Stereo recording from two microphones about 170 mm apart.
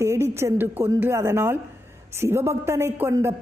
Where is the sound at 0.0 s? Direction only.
15° right (ahead or behind).